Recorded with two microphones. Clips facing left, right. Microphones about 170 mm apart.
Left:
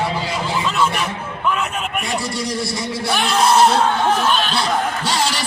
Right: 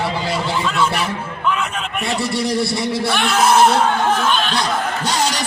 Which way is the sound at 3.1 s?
Centre (ahead or behind).